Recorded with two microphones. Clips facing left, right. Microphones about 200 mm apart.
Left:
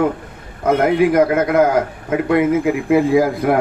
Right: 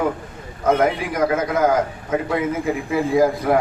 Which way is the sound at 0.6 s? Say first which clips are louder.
Left 4 dB; 55° left (ahead or behind).